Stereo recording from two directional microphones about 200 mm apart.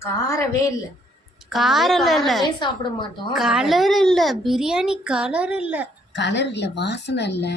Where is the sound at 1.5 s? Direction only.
Centre (ahead or behind).